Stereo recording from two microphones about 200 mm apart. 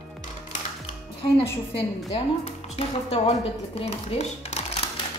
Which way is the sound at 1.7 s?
30° left (ahead or behind).